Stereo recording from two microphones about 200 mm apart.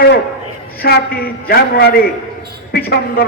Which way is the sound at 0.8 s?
50° left (ahead or behind).